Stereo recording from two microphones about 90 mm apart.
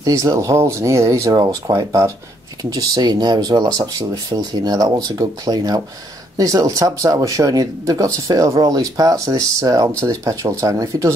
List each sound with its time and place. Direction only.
0.0 s speech: 35° right (ahead or behind)
1.3 s speech: 45° right (ahead or behind)
2.7 s speech: 50° right (ahead or behind)